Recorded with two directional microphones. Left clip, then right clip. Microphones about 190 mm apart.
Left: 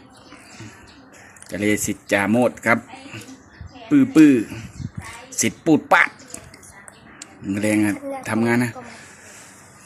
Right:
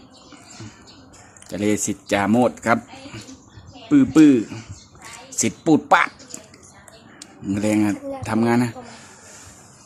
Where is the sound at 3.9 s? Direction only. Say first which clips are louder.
Even; centre (ahead or behind).